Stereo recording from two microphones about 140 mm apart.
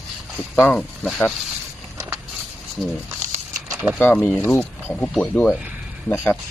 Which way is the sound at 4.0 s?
10° left (ahead or behind).